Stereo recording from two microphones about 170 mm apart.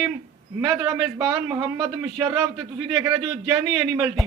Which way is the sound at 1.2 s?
15° right (ahead or behind).